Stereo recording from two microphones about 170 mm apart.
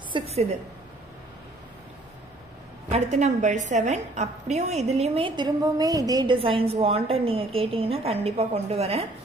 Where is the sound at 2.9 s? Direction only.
45° right (ahead or behind); by 6.4 s 20° right (ahead or behind).